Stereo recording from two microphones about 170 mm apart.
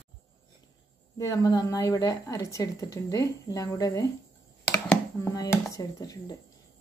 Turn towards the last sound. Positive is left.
turn(degrees=20)  # may be behind; listen again after turning